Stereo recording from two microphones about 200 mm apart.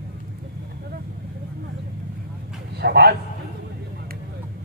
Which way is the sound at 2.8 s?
55° right (ahead or behind).